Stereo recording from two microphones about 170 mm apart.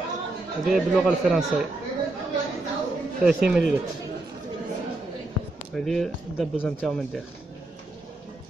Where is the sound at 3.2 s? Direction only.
5° right (ahead or behind).